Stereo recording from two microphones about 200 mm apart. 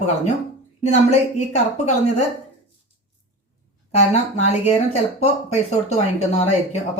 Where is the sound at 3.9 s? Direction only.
35° left (ahead or behind).